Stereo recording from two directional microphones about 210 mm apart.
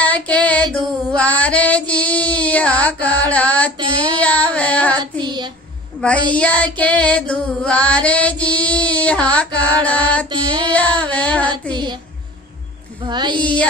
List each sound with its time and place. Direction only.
0.0 s female singing: 5° left (ahead or behind)
3.7 s speech: 20° right (ahead or behind)
4.2 s child singing: 5° left (ahead or behind)
5.2 s a sound: 20° right (ahead or behind)
5.9 s child singing: 5° left (ahead or behind)
6.8 s female singing: 5° left (ahead or behind)
11.7 s speech: 20° right (ahead or behind)
13.0 s speech: 20° right (ahead or behind)
13.4 s child singing: 5° left (ahead or behind)